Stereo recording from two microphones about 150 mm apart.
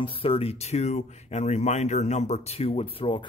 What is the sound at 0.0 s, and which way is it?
Speech, 35° left (ahead or behind).